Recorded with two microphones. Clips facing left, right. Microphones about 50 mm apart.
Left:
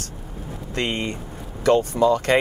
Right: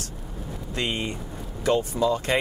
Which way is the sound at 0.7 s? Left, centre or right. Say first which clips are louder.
Left 3 dB; left.